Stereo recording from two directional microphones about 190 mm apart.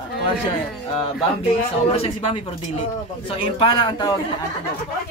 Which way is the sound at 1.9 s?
30° left (ahead or behind).